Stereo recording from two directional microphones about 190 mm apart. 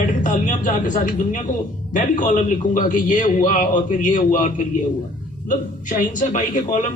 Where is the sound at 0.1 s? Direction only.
45° left (ahead or behind).